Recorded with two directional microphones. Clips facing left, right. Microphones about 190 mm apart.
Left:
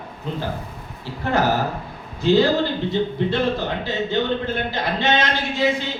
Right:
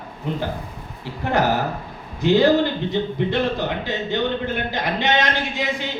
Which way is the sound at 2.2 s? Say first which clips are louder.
Right 1 dB; 15° right (ahead or behind).